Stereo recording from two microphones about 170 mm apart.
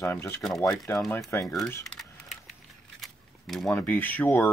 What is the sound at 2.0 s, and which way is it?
Typing, centre (ahead or behind).